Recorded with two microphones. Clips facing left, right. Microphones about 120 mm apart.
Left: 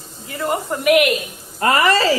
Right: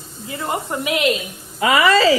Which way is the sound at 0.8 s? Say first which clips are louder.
Left 7 dB; 25° right (ahead or behind).